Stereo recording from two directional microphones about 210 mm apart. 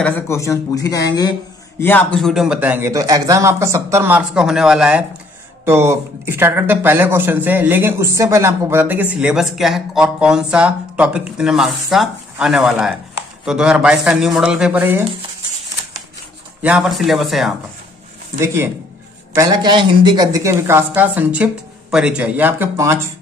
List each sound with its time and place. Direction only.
0.0 s a man's voice: 15° left (ahead or behind); by 15.0 s 10° right (ahead or behind)
16.6 s a man's voice: 5° right (ahead or behind)
18.4 s speech: 10° right (ahead or behind)